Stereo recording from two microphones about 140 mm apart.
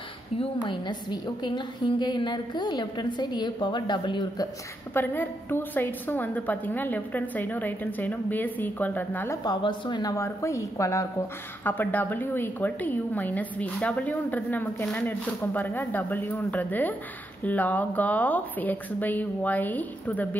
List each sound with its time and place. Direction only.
0.4 s a woman's voice: 35° left (ahead or behind)
4.9 s a woman's voice: 15° left (ahead or behind)
9.4 s a woman's voice: 35° left (ahead or behind); by 20.2 s 10° left (ahead or behind)